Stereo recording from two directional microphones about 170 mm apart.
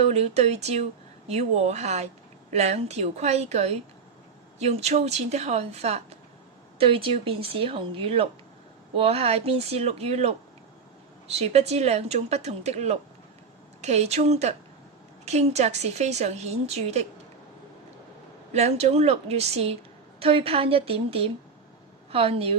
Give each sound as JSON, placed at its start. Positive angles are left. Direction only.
{"t": 0.1, "sound": "a woman's voice", "side_deg": -40}
{"t": 11.3, "sound": "a woman's voice", "side_deg": -40}
{"t": 18.5, "sound": "a woman's voice", "side_deg": -40}